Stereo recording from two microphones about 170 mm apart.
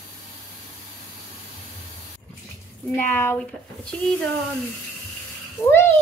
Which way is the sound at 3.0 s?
15° left (ahead or behind).